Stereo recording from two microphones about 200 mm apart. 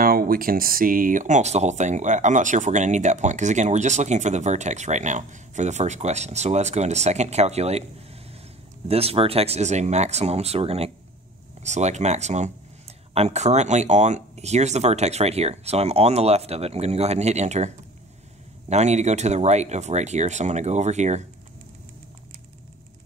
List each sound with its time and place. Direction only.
0.0 s speech: 45° right (ahead or behind)
8.8 s speech: 30° right (ahead or behind)